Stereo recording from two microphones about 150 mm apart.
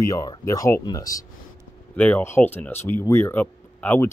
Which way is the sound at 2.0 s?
10° left (ahead or behind).